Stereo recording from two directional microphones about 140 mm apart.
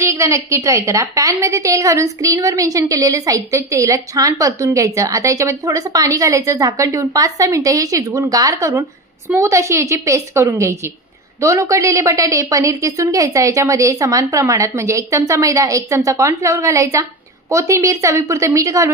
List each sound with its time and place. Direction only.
0.1 s a woman's voice: 20° right (ahead or behind)